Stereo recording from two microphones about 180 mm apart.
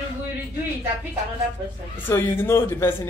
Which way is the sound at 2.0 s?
10° left (ahead or behind).